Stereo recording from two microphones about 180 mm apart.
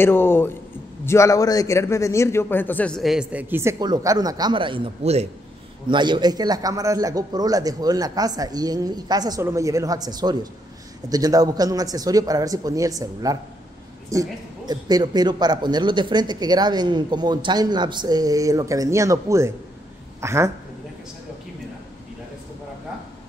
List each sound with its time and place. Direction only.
0.0 s a man's voice: 10° left (ahead or behind); by 5.3 s 35° right (ahead or behind)
5.9 s a woman's voice: 25° right (ahead or behind)